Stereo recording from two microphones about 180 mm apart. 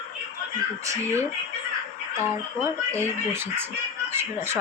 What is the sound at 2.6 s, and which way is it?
Speech, 15° right (ahead or behind).